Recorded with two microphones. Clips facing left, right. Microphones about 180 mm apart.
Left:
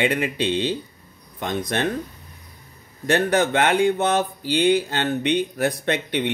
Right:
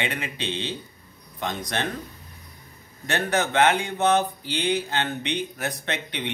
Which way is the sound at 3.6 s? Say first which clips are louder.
Left 1 dB; 45° left (ahead or behind).